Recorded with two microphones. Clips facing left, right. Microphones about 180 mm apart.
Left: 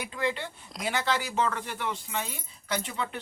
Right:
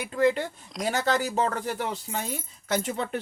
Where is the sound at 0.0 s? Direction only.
45° right (ahead or behind).